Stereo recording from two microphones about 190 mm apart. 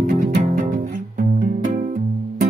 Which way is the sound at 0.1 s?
45° right (ahead or behind).